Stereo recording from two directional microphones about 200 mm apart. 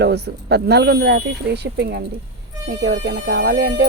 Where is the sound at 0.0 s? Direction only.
55° right (ahead or behind).